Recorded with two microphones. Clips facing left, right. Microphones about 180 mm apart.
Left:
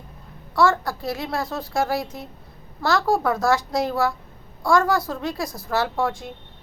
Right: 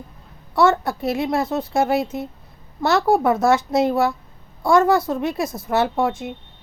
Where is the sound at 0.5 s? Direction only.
20° right (ahead or behind).